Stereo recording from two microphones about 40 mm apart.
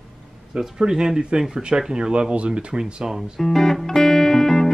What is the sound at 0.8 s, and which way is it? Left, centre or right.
Speech, centre.